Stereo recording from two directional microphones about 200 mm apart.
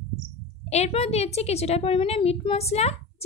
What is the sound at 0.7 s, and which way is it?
A woman's voice, 30° left (ahead or behind).